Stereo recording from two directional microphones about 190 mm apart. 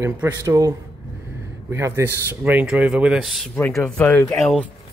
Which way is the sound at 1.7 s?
15° right (ahead or behind).